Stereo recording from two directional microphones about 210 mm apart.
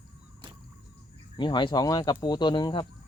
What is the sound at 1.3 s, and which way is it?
Speech, 20° left (ahead or behind).